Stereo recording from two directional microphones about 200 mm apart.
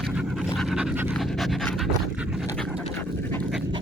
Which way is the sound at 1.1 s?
Centre (ahead or behind).